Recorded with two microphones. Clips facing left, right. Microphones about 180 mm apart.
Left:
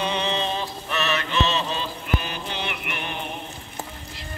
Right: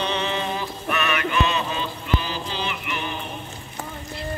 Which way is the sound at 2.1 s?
60° left (ahead or behind).